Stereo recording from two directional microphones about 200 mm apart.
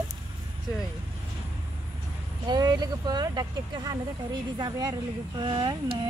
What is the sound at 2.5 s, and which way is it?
Speech, 20° right (ahead or behind).